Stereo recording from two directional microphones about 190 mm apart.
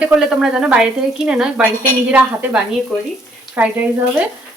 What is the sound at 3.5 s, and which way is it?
Speech, 10° right (ahead or behind).